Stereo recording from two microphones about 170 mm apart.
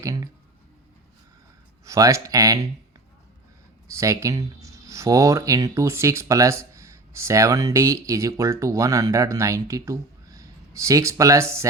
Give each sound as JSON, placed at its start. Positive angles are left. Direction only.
{"t": 0.0, "sound": "a sound", "side_deg": -20}
{"t": 1.8, "sound": "speech", "side_deg": -20}
{"t": 3.9, "sound": "speech", "side_deg": -20}